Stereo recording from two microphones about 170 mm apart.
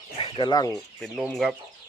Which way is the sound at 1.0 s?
Centre (ahead or behind).